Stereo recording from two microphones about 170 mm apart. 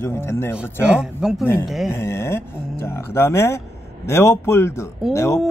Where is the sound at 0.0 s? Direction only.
15° left (ahead or behind).